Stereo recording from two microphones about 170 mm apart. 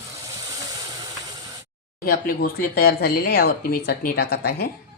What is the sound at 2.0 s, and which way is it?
Speech, 60° left (ahead or behind).